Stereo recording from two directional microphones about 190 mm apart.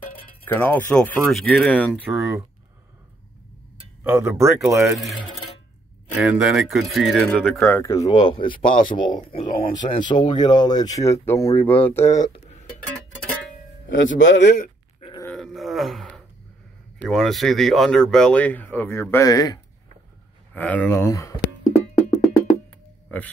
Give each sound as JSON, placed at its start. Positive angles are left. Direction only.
{"t": 0.5, "sound": "speech", "side_deg": 10}
{"t": 2.1, "sound": "speech", "side_deg": -15}
{"t": 4.0, "sound": "speech", "side_deg": -10}
{"t": 4.9, "sound": "speech", "side_deg": 0}
{"t": 7.8, "sound": "speech", "side_deg": 15}
{"t": 14.1, "sound": "a man's voice", "side_deg": 75}
{"t": 15.3, "sound": "a sound", "side_deg": 0}
{"t": 17.0, "sound": "speech", "side_deg": 0}
{"t": 20.5, "sound": "speech", "side_deg": 10}
{"t": 23.0, "sound": "music", "side_deg": 10}